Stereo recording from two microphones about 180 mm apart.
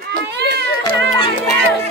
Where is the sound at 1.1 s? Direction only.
25° left (ahead or behind).